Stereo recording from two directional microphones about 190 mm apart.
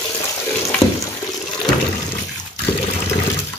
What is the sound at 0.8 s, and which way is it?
Water, 35° left (ahead or behind).